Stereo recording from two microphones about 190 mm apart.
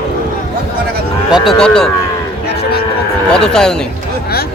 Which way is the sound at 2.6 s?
55° left (ahead or behind).